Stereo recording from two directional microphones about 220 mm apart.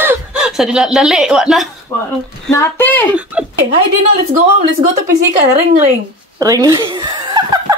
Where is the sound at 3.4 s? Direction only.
5° right (ahead or behind).